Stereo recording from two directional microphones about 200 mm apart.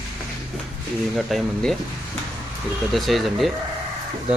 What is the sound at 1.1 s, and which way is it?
Speech, centre (ahead or behind).